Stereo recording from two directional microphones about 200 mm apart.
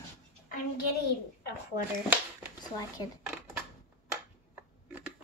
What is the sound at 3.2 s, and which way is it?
Dishes, 5° right (ahead or behind).